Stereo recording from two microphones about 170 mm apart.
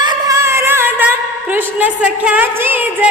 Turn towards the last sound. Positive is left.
turn(degrees=-10)  # may be behind; listen again after turning